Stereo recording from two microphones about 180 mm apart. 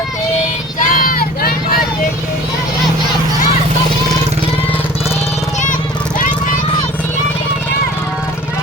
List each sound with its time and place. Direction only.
0.8 s vehicle: 55° left (ahead or behind)